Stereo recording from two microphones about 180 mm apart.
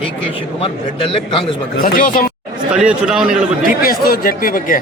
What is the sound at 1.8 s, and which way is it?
Speech, 55° left (ahead or behind).